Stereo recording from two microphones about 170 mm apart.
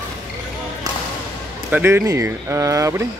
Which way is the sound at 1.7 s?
10° right (ahead or behind).